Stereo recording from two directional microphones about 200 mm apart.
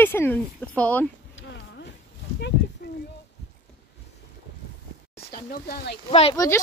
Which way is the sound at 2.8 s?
50° left (ahead or behind).